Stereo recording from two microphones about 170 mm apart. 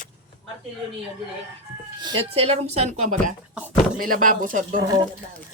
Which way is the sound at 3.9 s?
55° right (ahead or behind).